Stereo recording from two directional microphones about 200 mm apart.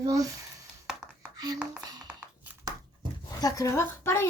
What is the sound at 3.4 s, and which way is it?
Speech, 15° left (ahead or behind).